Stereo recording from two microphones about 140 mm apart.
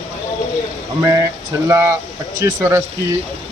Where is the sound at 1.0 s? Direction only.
20° right (ahead or behind).